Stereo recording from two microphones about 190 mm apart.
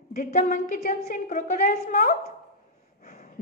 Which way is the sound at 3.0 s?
50° left (ahead or behind).